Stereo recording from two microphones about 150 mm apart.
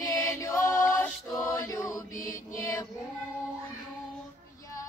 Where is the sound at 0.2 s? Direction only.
20° left (ahead or behind).